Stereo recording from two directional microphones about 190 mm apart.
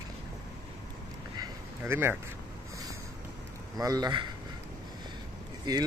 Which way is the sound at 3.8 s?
20° right (ahead or behind).